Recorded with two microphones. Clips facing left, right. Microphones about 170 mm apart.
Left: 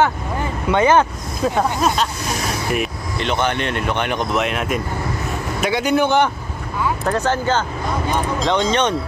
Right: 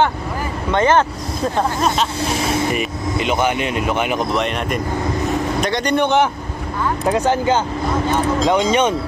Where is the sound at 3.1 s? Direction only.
5° right (ahead or behind).